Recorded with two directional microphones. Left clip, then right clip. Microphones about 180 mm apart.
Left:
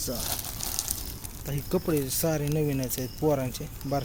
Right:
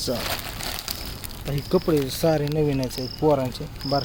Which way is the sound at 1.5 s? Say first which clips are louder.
Right 6 dB; 5° right (ahead or behind).